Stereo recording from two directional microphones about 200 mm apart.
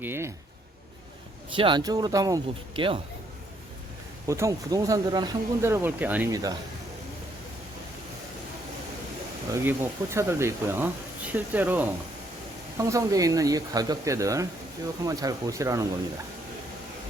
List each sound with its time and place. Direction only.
0.0 s speech: 10° right (ahead or behind)
1.5 s speech: 25° right (ahead or behind)
4.3 s speech: 15° right (ahead or behind)
9.5 s speech: 10° right (ahead or behind)